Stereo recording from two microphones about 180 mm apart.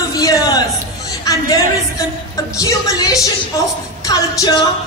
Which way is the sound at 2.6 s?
20° left (ahead or behind).